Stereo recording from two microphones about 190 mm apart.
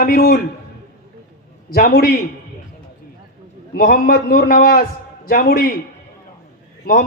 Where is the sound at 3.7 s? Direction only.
55° left (ahead or behind).